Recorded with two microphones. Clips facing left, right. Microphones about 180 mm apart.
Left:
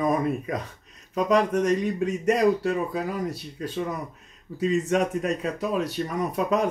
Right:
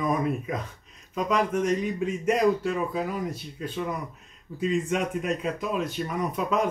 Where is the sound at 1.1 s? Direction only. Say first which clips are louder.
Left 4 dB; 40° left (ahead or behind).